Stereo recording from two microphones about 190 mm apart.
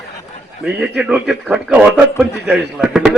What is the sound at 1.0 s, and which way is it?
A man's voice, 5° right (ahead or behind).